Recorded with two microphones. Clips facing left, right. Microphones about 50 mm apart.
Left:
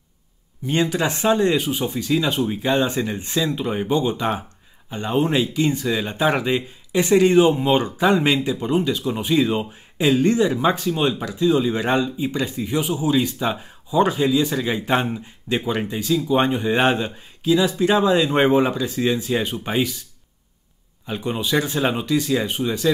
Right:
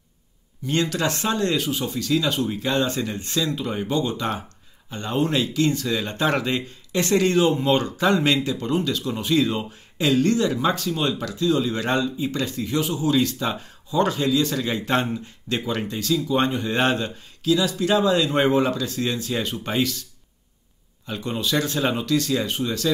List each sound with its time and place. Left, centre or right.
0.7 s speech: centre